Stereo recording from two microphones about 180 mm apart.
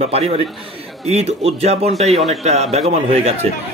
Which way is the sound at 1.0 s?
35° right (ahead or behind).